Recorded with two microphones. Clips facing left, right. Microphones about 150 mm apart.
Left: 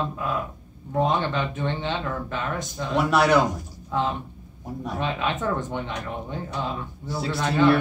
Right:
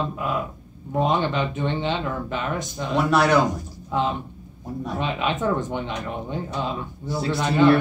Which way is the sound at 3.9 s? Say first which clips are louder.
Right 2 dB; 20° right (ahead or behind).